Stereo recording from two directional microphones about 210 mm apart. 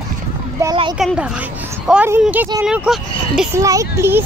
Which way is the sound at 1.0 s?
Centre (ahead or behind).